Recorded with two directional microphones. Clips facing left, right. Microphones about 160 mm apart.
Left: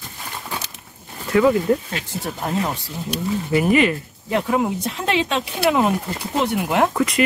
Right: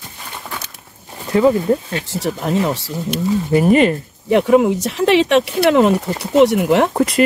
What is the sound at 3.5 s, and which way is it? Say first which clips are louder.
Speech: right 4 dB; 35° right (ahead or behind).